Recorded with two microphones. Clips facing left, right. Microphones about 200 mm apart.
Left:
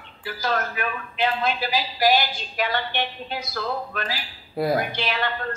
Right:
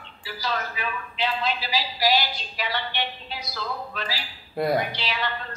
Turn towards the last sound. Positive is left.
turn(degrees=50)  # may be behind; listen again after turning